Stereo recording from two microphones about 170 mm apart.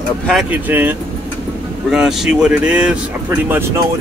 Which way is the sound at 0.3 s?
Centre (ahead or behind).